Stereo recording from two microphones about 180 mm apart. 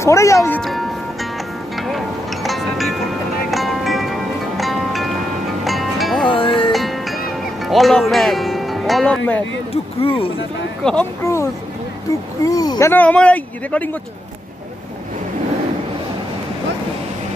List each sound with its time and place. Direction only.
0.0 s speech: 15° left (ahead or behind)
0.6 s music: centre (ahead or behind)
6.2 s music: 30° left (ahead or behind)
6.7 s music: centre (ahead or behind)
7.6 s speech: centre (ahead or behind)
9.9 s speech: 30° left (ahead or behind)
10.8 s speech: 5° left (ahead or behind)
12.4 s speech: 20° left (ahead or behind)